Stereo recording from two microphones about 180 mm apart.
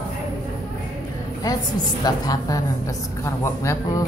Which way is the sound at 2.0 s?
20° left (ahead or behind).